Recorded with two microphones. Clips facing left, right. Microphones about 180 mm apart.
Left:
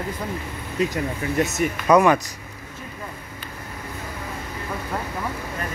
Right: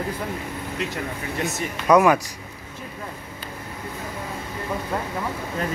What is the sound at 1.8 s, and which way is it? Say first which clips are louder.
Speech: even; 5° right (ahead or behind).